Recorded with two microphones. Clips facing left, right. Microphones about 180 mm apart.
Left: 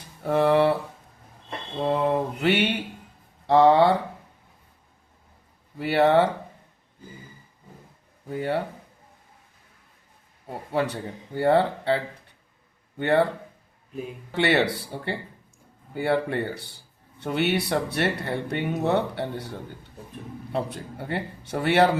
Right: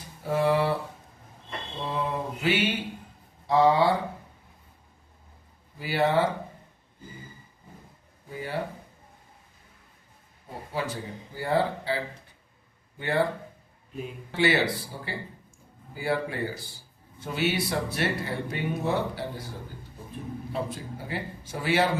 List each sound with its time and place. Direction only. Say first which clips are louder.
0.2 s speech: left 4 dB; 60° left (ahead or behind)
1.8 s mantra: left 8 dB; 60° left (ahead or behind)
3.4 s speech: left 4 dB; 65° left (ahead or behind)
5.8 s a man's voice: left 5 dB; 65° left (ahead or behind)
8.3 s a man's voice: left 9 dB; 65° left (ahead or behind)
10.7 s a man's voice: left 6 dB; 65° left (ahead or behind)
13.0 s a man's voice: left 5 dB; 65° left (ahead or behind)
14.3 s a man's voice: left 2 dB; 65° left (ahead or behind)